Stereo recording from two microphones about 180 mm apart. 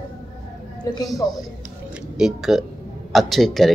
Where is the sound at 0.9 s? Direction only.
20° left (ahead or behind).